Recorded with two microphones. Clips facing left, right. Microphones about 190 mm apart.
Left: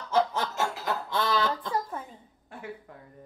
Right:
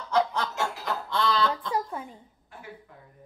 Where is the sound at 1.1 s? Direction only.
15° left (ahead or behind).